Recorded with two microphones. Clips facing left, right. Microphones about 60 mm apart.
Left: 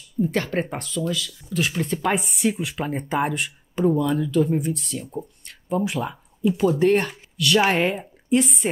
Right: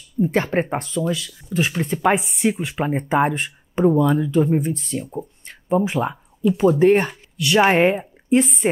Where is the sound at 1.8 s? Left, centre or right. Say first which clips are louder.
Right 6 dB; centre.